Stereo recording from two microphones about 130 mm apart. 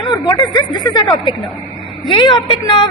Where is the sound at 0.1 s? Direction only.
35° left (ahead or behind).